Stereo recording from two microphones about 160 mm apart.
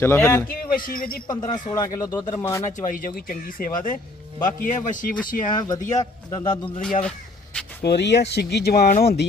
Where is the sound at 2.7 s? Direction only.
55° left (ahead or behind).